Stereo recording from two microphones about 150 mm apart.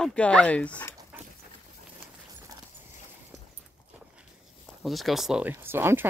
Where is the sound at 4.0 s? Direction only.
5° right (ahead or behind).